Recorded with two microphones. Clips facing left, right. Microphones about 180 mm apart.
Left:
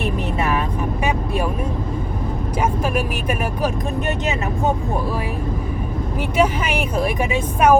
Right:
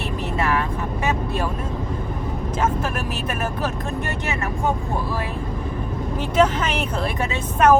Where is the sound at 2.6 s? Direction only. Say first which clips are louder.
Left 3 dB; 15° left (ahead or behind).